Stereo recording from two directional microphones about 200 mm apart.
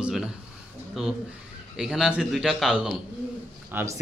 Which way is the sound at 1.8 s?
Centre (ahead or behind).